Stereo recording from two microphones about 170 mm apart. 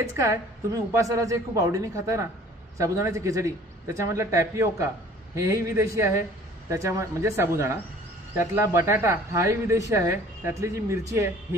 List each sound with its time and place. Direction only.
0.1 s a man's voice: 20° right (ahead or behind)